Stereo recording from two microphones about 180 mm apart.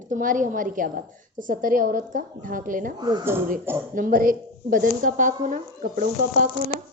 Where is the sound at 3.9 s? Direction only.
50° right (ahead or behind).